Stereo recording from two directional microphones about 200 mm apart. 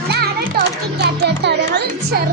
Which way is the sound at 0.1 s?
50° right (ahead or behind).